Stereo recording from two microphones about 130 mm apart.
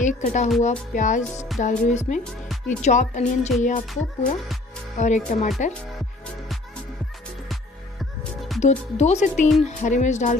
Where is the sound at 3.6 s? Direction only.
80° left.